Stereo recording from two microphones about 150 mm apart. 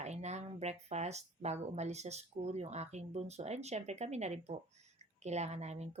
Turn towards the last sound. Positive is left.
turn(degrees=-45)  # may be behind; listen again after turning